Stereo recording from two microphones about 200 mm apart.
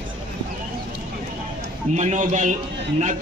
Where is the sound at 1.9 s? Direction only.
35° right (ahead or behind).